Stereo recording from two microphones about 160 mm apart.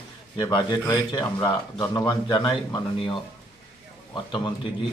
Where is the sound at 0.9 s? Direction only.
20° left (ahead or behind).